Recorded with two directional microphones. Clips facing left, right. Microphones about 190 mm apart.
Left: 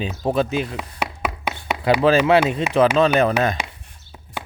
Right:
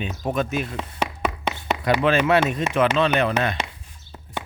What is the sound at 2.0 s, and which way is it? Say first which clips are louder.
Speech: left 4 dB; 35° left (ahead or behind).